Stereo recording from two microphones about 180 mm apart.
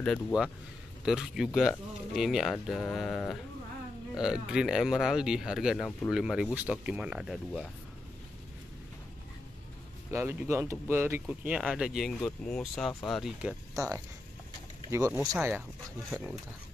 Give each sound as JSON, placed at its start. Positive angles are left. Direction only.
{"t": 0.0, "sound": "speech", "side_deg": 0}
{"t": 10.1, "sound": "speech", "side_deg": -15}
{"t": 13.7, "sound": "speech", "side_deg": -15}